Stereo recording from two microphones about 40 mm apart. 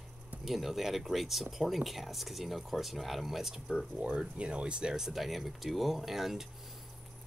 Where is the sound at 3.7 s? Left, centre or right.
Right.